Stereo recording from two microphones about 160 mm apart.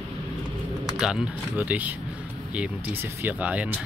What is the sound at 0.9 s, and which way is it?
Speech, 5° right (ahead or behind).